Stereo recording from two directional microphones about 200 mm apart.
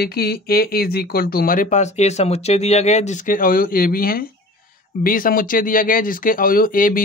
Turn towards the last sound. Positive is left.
turn(degrees=45)  # may be behind; listen again after turning